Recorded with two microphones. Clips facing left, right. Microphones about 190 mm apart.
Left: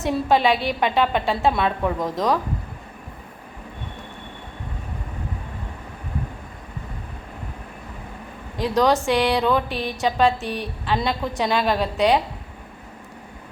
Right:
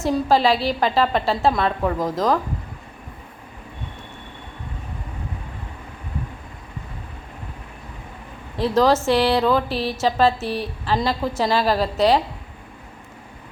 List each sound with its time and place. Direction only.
0.0 s a woman's voice: centre (ahead or behind)
8.6 s a woman's voice: centre (ahead or behind)
9.6 s a woman's voice: 30° right (ahead or behind)
10.0 s a woman's voice: centre (ahead or behind)